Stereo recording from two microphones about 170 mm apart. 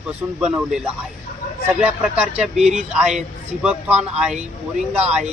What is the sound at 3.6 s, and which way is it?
Speech, 5° right (ahead or behind).